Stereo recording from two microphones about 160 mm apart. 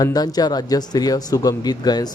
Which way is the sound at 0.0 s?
25° left (ahead or behind).